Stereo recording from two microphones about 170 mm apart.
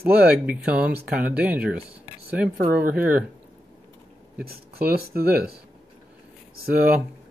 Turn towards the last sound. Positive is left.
turn(degrees=-10)  # may be behind; listen again after turning